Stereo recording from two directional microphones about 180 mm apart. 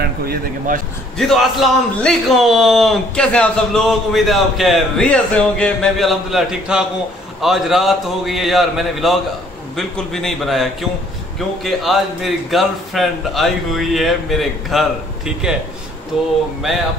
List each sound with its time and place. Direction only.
0.0 s speech: 55° right (ahead or behind)
1.1 s a man's voice: centre (ahead or behind)